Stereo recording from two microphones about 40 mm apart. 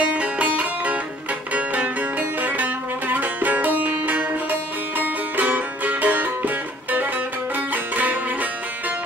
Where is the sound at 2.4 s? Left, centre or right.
Right.